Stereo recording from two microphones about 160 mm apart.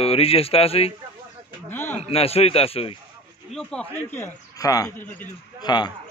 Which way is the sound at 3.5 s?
10° left (ahead or behind).